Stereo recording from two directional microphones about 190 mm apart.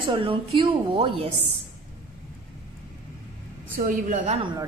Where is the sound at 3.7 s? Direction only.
45° right (ahead or behind).